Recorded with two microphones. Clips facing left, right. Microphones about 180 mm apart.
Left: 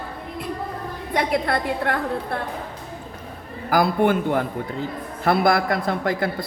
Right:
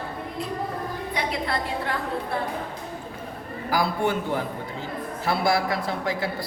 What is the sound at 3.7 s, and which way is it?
A woman's voice, 50° left (ahead or behind).